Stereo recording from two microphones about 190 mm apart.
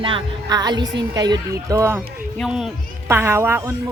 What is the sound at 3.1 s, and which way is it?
Speech, 15° right (ahead or behind).